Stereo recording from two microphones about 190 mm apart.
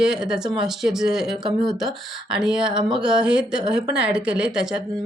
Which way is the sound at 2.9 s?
5° right (ahead or behind).